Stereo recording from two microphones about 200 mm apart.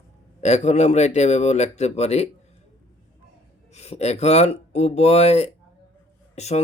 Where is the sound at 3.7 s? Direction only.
35° left (ahead or behind).